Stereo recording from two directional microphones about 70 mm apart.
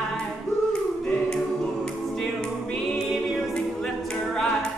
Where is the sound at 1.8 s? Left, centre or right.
Centre.